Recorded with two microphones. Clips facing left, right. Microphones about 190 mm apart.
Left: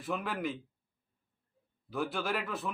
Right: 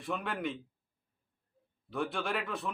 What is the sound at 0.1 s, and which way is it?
Speech, centre (ahead or behind).